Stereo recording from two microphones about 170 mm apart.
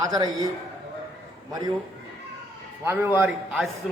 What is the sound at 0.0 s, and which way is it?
Speech, 20° right (ahead or behind).